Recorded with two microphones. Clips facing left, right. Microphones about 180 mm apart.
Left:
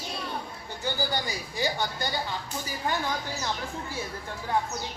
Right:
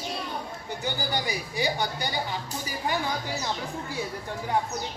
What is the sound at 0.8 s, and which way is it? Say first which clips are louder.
Speech: left 1 dB; 15° right (ahead or behind).